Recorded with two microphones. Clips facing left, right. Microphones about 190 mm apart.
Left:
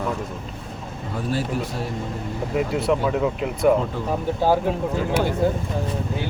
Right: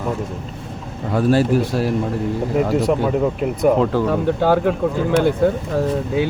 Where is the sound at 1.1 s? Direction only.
85° right.